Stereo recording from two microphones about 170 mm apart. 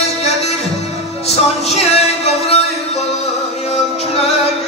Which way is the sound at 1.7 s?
40° left (ahead or behind).